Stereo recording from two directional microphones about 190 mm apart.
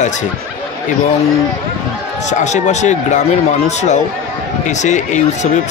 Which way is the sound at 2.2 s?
40° left (ahead or behind).